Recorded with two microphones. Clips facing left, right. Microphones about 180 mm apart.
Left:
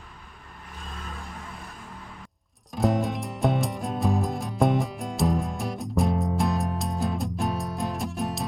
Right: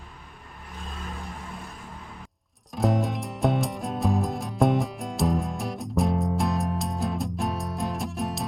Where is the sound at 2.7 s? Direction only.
Centre (ahead or behind).